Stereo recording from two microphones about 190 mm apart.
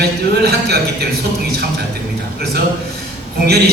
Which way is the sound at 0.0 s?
55° right (ahead or behind).